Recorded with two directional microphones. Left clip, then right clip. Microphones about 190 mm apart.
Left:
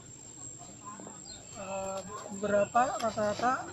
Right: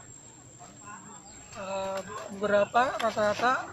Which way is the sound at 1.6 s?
35° right (ahead or behind).